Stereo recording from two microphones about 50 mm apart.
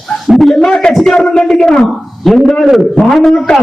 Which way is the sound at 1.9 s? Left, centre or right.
Centre.